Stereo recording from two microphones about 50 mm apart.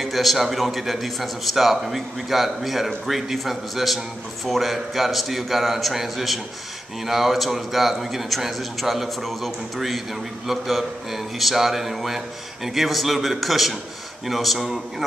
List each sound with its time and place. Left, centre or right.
0.0 s a man's voice: centre